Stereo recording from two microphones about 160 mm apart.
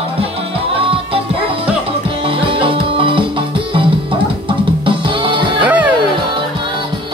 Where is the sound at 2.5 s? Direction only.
35° right (ahead or behind).